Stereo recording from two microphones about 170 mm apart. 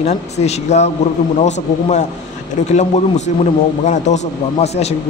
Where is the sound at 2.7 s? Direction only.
45° left (ahead or behind).